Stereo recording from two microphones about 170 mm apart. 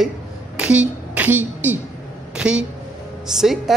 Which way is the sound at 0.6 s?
5° right (ahead or behind).